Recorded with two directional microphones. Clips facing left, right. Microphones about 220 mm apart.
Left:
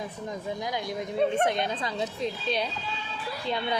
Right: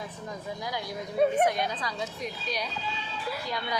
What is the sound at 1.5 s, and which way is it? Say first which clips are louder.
A woman's voice: left 1 dB; 25° left (ahead or behind).